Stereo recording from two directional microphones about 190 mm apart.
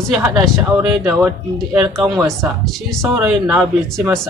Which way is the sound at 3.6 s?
5° left (ahead or behind).